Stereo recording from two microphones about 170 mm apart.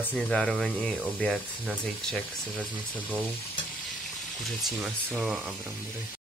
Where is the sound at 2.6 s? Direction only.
10° right (ahead or behind).